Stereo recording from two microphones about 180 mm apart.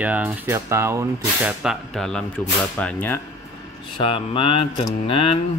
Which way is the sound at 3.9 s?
30° left (ahead or behind).